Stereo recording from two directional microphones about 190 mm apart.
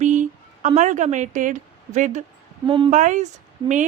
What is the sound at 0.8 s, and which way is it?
A woman's voice, 40° right (ahead or behind).